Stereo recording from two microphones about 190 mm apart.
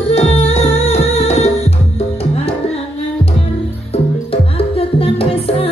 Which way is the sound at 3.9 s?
30° left (ahead or behind).